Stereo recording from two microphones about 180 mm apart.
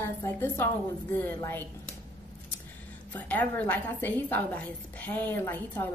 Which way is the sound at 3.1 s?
10° left (ahead or behind).